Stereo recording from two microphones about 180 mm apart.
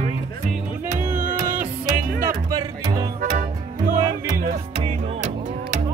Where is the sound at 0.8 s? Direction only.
50° right (ahead or behind).